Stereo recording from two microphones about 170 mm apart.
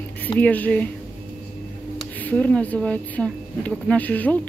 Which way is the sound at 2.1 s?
10° left (ahead or behind).